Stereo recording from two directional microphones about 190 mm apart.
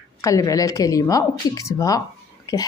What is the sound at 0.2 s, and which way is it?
Speech, 15° left (ahead or behind).